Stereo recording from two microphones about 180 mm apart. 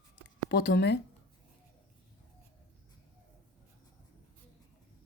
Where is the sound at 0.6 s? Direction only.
70° left (ahead or behind).